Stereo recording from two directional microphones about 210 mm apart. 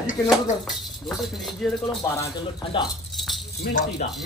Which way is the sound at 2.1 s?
15° left (ahead or behind).